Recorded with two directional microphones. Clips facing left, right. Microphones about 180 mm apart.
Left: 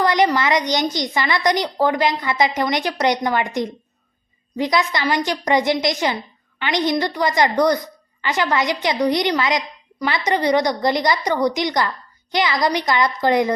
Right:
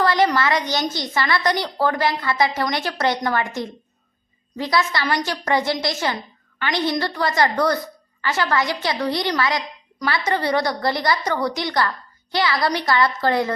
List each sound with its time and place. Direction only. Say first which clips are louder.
0.0 s a woman's voice: left 1 dB; 15° left (ahead or behind)